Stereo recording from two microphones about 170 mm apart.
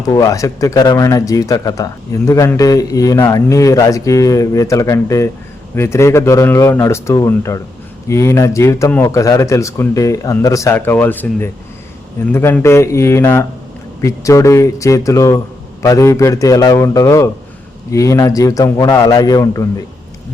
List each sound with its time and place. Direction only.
0.0 s speech: 20° left (ahead or behind)